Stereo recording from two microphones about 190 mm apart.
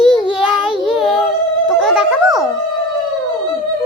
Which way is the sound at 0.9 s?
Centre (ahead or behind).